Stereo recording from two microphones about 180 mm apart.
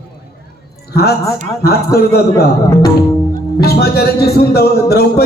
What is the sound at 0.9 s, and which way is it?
Speech, 60° left (ahead or behind).